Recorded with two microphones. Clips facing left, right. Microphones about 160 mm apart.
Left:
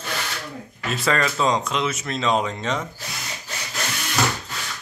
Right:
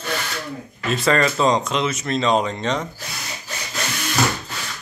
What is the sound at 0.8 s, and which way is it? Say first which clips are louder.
Speech: right 4 dB; centre (ahead or behind).